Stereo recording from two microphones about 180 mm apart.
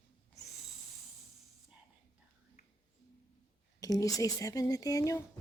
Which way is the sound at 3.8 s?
20° left (ahead or behind).